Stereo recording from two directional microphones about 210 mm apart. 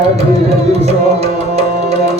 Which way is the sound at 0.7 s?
30° right (ahead or behind).